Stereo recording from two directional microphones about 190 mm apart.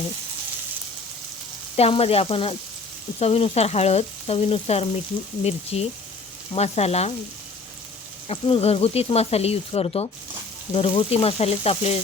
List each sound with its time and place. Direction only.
1.7 s speech: 30° left (ahead or behind)
8.3 s speech: 30° left (ahead or behind)